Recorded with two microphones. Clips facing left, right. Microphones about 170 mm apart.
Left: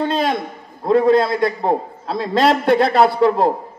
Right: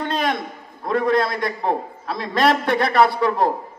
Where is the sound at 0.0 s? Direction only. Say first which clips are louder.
Left 4 dB; 30° left (ahead or behind).